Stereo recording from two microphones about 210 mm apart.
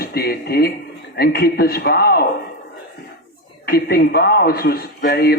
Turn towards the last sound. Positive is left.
turn(degrees=45)  # may be behind; listen again after turning